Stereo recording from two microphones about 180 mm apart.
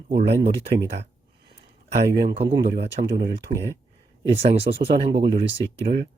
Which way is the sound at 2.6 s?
55° right (ahead or behind).